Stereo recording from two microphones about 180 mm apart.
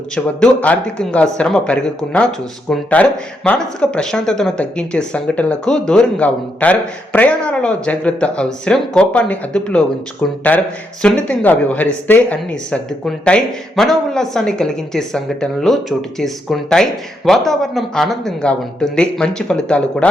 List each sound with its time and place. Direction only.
0.3 s speech: 5° left (ahead or behind)